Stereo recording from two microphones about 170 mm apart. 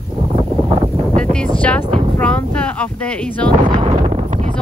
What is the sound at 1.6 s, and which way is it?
Vehicle, 10° left (ahead or behind).